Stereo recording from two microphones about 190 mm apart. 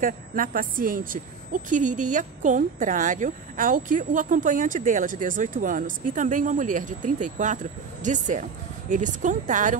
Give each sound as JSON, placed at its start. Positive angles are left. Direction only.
{"t": 0.0, "sound": "a woman's voice", "side_deg": -45}